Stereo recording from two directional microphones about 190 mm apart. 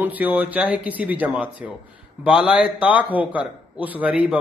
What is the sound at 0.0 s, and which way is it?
A man's voice, 10° right (ahead or behind).